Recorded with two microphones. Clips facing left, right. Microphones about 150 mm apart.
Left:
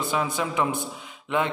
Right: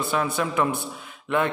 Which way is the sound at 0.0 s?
15° left (ahead or behind).